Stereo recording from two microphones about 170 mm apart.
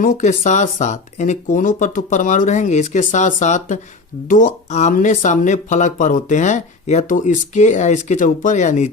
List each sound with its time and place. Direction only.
0.0 s speech: 45° left (ahead or behind)